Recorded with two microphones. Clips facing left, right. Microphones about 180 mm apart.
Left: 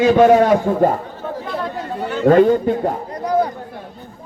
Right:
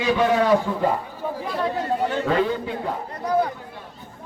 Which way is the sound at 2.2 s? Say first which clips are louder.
Left 10 dB; 45° left (ahead or behind).